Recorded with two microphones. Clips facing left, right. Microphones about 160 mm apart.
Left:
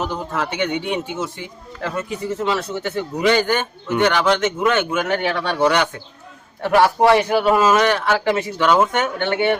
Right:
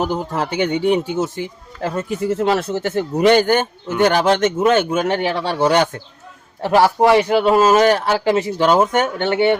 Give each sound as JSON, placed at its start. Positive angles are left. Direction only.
{"t": 0.0, "sound": "speech", "side_deg": -35}
{"t": 2.3, "sound": "speech", "side_deg": -50}
{"t": 6.6, "sound": "a man's voice", "side_deg": -25}
{"t": 9.3, "sound": "a man's voice", "side_deg": -25}